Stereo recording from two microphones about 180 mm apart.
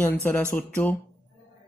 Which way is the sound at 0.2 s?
10° left (ahead or behind).